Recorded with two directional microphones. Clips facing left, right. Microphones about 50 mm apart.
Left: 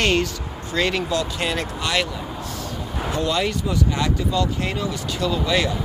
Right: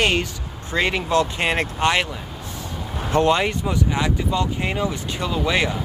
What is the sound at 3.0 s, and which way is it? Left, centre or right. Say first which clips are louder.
Speech: right 5 dB; right.